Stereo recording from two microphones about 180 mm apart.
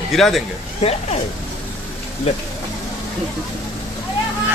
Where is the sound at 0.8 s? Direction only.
35° left (ahead or behind).